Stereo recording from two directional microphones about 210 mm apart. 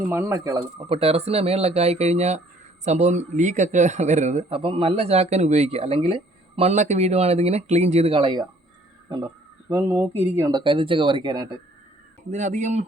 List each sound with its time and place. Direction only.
0.1 s speech: 10° right (ahead or behind)
12.3 s speech: 35° right (ahead or behind)